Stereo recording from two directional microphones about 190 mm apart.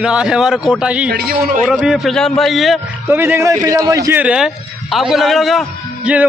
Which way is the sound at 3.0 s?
10° right (ahead or behind).